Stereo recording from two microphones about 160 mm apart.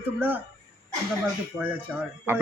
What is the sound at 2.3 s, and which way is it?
Speech, 15° right (ahead or behind).